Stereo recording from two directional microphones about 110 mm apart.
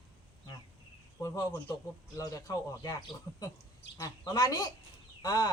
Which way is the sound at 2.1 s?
30° left (ahead or behind).